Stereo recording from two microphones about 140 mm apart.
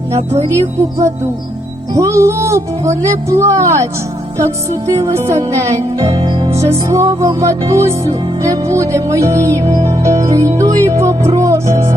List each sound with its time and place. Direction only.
0.8 s speech: 20° right (ahead or behind)
6.2 s music: 35° right (ahead or behind)
6.5 s speech: 20° right (ahead or behind)
7.7 s music: 20° right (ahead or behind)